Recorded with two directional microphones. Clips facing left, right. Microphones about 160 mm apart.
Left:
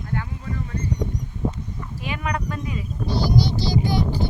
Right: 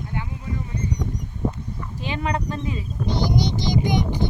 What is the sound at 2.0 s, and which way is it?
Speech, 30° right (ahead or behind).